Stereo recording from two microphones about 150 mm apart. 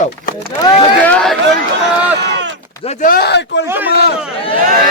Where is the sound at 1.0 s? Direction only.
5° left (ahead or behind).